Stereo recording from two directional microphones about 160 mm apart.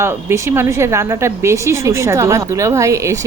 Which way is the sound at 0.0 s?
15° right (ahead or behind).